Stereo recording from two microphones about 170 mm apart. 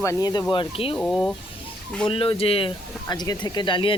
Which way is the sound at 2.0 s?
30° left (ahead or behind).